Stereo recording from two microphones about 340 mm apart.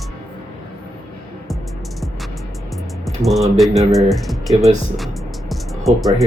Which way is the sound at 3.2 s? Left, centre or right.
Centre.